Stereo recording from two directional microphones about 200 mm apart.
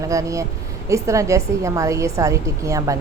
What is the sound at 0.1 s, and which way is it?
A woman's voice, 15° right (ahead or behind).